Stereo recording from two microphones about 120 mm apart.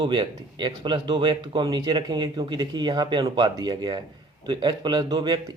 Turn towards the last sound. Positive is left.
turn(degrees=-35)  # may be behind; listen again after turning